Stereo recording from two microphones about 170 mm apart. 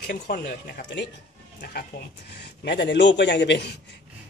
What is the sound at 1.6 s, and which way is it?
Speech, 65° left (ahead or behind).